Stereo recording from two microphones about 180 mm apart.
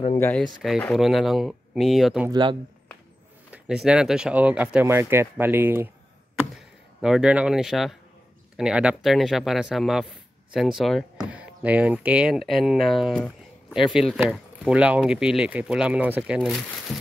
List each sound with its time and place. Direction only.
0.2 s speech: 10° left (ahead or behind)
2.2 s speech: 25° right (ahead or behind)
3.5 s speech: 5° right (ahead or behind)